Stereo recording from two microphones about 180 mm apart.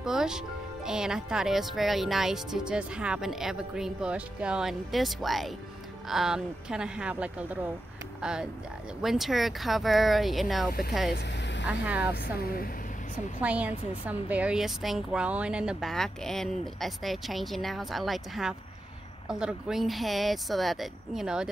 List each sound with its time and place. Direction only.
0.0 s a woman's voice: 5° right (ahead or behind)
11.1 s vehicle: 70° left (ahead or behind)
11.6 s speech: 10° right (ahead or behind)
12.2 s a woman's voice: 55° left (ahead or behind)
13.4 s a woman's voice: 10° right (ahead or behind)